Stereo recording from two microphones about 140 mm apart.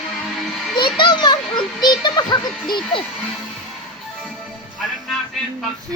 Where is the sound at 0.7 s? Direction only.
35° left (ahead or behind).